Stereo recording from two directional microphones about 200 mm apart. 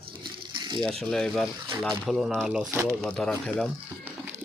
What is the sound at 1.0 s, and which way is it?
Speech, centre (ahead or behind).